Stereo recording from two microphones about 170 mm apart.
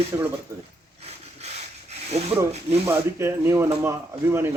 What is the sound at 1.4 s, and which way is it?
Rub, 40° right (ahead or behind).